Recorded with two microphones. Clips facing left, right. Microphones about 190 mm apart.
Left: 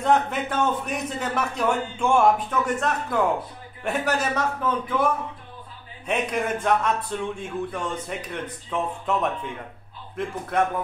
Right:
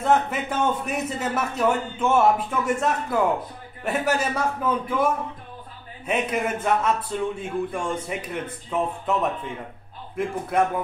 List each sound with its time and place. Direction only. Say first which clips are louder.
0.0 s a man's voice: even; 5° right (ahead or behind)
10.5 s a man's voice: right 1 dB; 10° right (ahead or behind)